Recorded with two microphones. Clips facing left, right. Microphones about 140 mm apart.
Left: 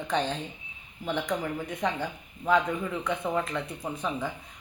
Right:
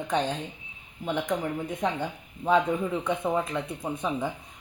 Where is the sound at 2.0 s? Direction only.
25° right (ahead or behind).